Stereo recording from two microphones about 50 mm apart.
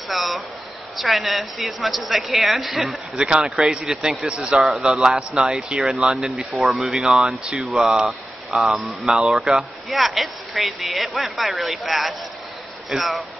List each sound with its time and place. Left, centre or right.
0.1 s speech: centre
3.2 s a man's voice: centre
5.0 s speech: centre
9.0 s speech: centre